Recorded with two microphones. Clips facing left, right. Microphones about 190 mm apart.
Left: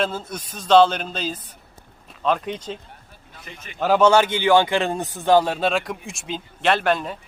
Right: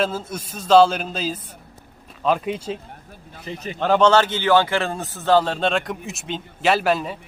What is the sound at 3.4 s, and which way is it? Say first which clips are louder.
Speech: right 11 dB; 35° right (ahead or behind).